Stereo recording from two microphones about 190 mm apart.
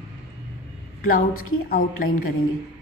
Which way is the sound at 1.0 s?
50° left (ahead or behind).